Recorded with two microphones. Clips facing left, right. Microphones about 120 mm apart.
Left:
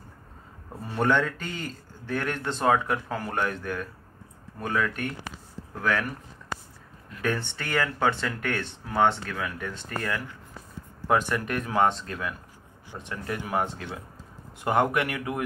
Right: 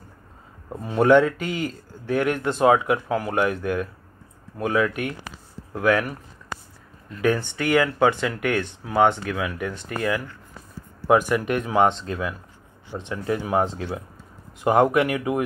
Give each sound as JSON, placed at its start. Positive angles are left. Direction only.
{"t": 0.8, "sound": "speech", "side_deg": -15}
{"t": 7.2, "sound": "speech", "side_deg": -15}